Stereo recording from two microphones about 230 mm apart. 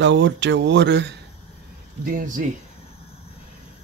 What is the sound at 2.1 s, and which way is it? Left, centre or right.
Cutlery, right.